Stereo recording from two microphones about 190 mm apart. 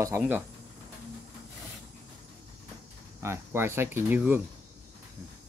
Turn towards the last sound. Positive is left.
turn(degrees=-10)  # may be behind; listen again after turning